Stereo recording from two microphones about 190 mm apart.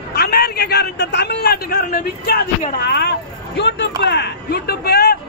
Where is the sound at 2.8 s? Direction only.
60° left (ahead or behind).